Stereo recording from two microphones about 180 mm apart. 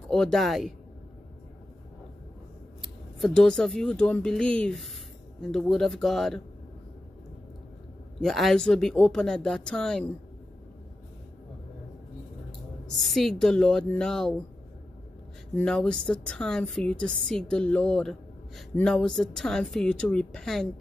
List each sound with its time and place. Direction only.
0.1 s a woman's voice: centre (ahead or behind)
3.2 s a woman's voice: 5° left (ahead or behind)
8.2 s a woman's voice: centre (ahead or behind)
12.9 s a woman's voice: centre (ahead or behind)
15.5 s a woman's voice: 5° left (ahead or behind)